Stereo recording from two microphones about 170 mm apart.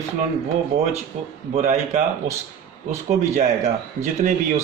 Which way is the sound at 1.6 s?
45° right (ahead or behind).